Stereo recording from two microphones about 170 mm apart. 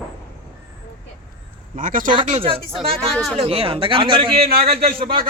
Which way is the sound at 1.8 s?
50° right (ahead or behind).